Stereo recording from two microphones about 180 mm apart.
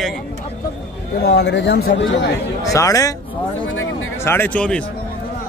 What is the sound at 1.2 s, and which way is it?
Speech, 65° left (ahead or behind).